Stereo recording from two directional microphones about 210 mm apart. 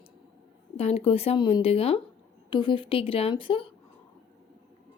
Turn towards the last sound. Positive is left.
turn(degrees=25)  # may be behind; listen again after turning